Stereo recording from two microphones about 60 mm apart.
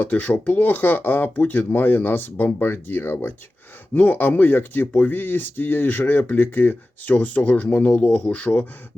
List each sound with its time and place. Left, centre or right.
0.0 s speech: left
3.9 s speech: left